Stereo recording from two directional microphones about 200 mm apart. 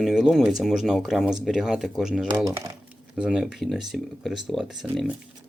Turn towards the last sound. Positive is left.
turn(degrees=0)  # may be behind; listen again after turning